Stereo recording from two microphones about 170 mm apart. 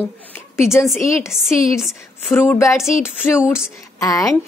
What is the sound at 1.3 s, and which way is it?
Speech, 5° right (ahead or behind).